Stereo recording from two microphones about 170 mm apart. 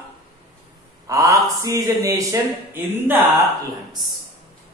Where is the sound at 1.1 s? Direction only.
20° right (ahead or behind).